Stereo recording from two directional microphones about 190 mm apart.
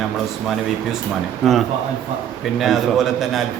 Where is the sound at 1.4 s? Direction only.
Centre (ahead or behind).